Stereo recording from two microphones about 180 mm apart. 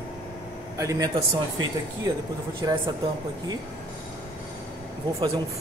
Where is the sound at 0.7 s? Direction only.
20° right (ahead or behind).